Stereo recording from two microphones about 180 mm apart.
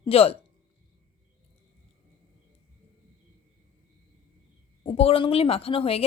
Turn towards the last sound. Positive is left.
turn(degrees=30)  # may be behind; listen again after turning